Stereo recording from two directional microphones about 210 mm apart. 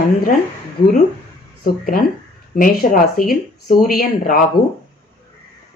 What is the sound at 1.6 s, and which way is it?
Speech, 45° left (ahead or behind).